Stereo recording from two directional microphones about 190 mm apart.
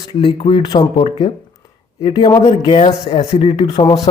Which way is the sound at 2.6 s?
30° left (ahead or behind).